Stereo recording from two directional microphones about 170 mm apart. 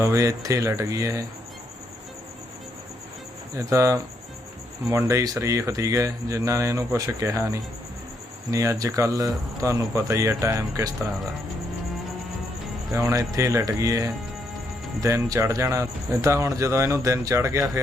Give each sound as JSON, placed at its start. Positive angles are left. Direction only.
{"t": 0.0, "sound": "speech", "side_deg": -15}
{"t": 3.7, "sound": "speech", "side_deg": -15}
{"t": 12.9, "sound": "speech", "side_deg": -20}